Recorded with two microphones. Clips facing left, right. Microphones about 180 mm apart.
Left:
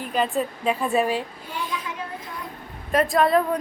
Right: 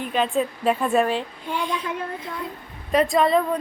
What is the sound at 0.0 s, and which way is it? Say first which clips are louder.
A woman's voice: right 1 dB; centre (ahead or behind).